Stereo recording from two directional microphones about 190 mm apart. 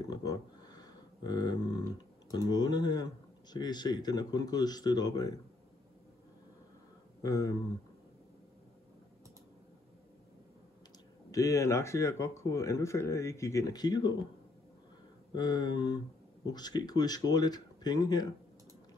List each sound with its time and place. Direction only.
0.1 s a sound: 20° left (ahead or behind)
2.3 s speech: 20° left (ahead or behind)
7.2 s speech: 15° left (ahead or behind)
11.3 s speech: 15° left (ahead or behind)
15.3 s speech: 20° left (ahead or behind)